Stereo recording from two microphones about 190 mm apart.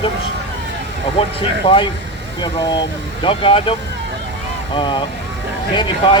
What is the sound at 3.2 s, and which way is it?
Speech, 30° left (ahead or behind).